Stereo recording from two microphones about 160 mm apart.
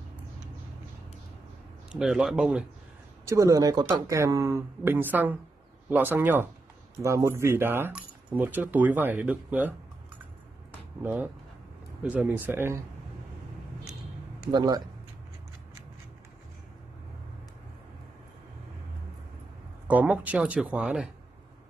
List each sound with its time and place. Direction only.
1.9 s a man's voice: 5° right (ahead or behind)
3.3 s speech: 20° right (ahead or behind)
11.0 s speech: 15° right (ahead or behind)
14.5 s speech: 25° right (ahead or behind)
19.9 s speech: 10° right (ahead or behind)